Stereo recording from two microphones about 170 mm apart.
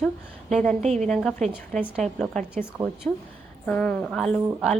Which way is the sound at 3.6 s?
10° left (ahead or behind).